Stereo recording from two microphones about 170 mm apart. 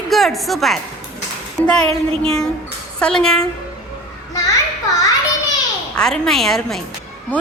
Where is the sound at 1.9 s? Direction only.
35° right (ahead or behind).